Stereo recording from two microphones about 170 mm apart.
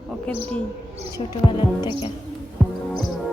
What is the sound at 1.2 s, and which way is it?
Speech, 30° left (ahead or behind).